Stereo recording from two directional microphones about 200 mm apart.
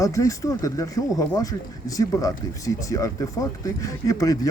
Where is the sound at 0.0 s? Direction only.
15° left (ahead or behind).